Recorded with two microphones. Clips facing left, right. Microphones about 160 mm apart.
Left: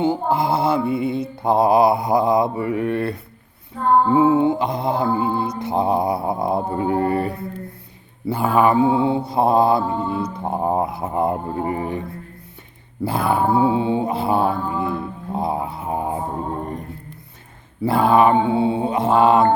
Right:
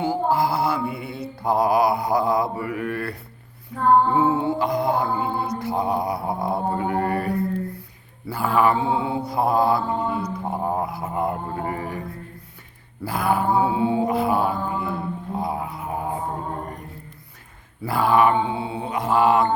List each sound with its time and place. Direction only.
0.0 s mantra: 20° left (ahead or behind)
13.1 s mantra: 25° left (ahead or behind)
17.8 s mantra: 25° left (ahead or behind)